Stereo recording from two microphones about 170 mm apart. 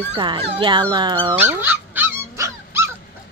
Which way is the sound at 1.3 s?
10° right (ahead or behind).